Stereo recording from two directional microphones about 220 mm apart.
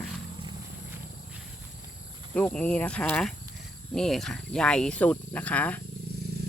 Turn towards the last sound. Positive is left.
turn(degrees=5)  # may be behind; listen again after turning